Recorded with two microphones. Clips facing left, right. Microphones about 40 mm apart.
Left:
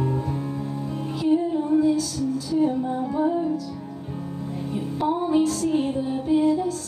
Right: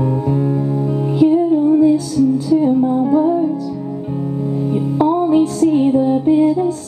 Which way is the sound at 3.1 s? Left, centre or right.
Centre.